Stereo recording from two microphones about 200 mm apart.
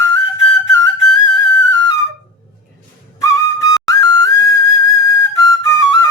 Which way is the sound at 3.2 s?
15° left (ahead or behind).